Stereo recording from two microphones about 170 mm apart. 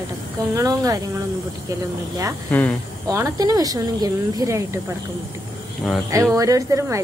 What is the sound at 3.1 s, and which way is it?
Speech, 20° right (ahead or behind).